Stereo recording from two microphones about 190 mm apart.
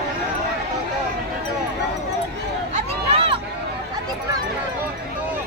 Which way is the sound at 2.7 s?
30° right (ahead or behind).